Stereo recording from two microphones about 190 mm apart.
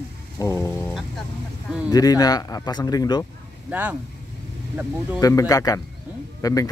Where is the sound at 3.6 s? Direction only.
5° right (ahead or behind).